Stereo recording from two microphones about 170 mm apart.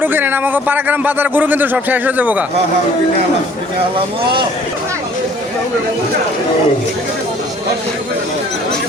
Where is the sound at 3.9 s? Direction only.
30° right (ahead or behind).